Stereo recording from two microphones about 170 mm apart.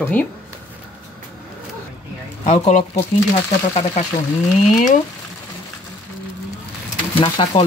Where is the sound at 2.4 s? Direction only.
40° left (ahead or behind).